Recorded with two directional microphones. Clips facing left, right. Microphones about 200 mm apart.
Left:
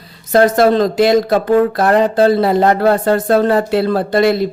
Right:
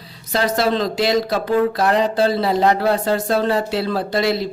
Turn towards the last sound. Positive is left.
turn(degrees=55)  # may be behind; listen again after turning